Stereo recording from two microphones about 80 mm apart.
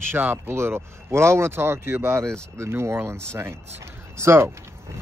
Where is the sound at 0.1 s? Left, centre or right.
Right.